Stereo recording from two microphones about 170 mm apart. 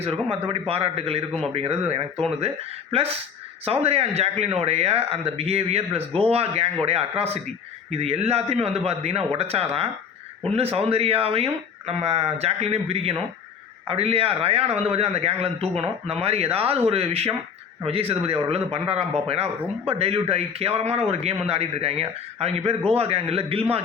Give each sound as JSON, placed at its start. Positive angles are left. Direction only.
{"t": 0.0, "sound": "speech", "side_deg": -35}
{"t": 3.7, "sound": "speech", "side_deg": -35}